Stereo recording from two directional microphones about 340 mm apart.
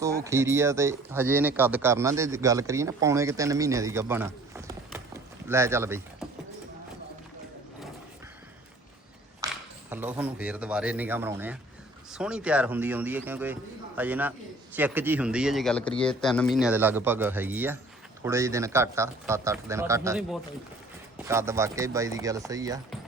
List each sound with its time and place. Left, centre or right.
0.0 s speech: centre
9.4 s speech: centre